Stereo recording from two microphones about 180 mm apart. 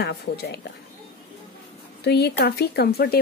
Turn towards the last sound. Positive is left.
turn(degrees=60)  # may be behind; listen again after turning